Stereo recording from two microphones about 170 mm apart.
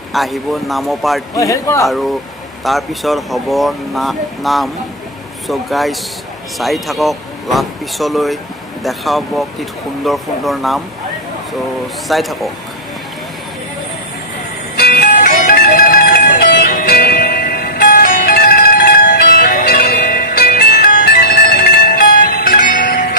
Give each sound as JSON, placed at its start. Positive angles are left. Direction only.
{"t": 0.1, "sound": "speech", "side_deg": 0}
{"t": 1.3, "sound": "a man's voice", "side_deg": 20}
{"t": 1.9, "sound": "speech", "side_deg": 0}
{"t": 12.1, "sound": "speech", "side_deg": 0}
{"t": 14.8, "sound": "music", "side_deg": 60}